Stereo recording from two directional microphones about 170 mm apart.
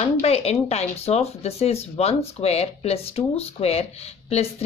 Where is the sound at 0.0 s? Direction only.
35° left (ahead or behind).